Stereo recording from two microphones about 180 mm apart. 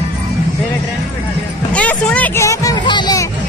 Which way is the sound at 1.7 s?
5° left (ahead or behind).